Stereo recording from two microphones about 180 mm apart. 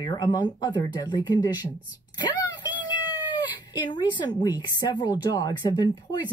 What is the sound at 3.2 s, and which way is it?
Cat, 25° left (ahead or behind).